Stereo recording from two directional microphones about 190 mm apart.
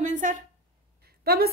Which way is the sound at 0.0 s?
40° right (ahead or behind).